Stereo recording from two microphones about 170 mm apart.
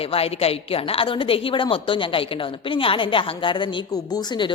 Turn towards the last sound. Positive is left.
turn(degrees=25)  # may be behind; listen again after turning